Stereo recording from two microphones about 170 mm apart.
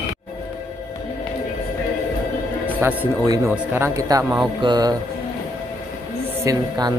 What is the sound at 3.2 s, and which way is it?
Speech, 20° right (ahead or behind).